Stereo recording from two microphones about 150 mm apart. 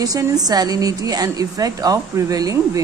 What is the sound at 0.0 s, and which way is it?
A woman's voice, 25° right (ahead or behind).